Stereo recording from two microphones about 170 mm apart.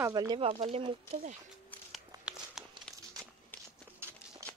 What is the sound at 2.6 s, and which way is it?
Crumpling, centre (ahead or behind).